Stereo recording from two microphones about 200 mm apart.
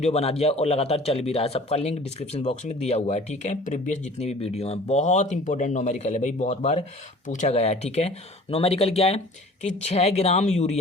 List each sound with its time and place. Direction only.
0.0 s speech: 30° left (ahead or behind)